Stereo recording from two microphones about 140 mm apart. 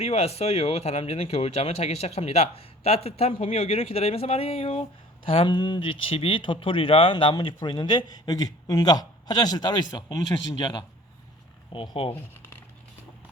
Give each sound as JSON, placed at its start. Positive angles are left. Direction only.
{"t": 0.0, "sound": "speech", "side_deg": 45}
{"t": 12.3, "sound": "crumpling", "side_deg": 15}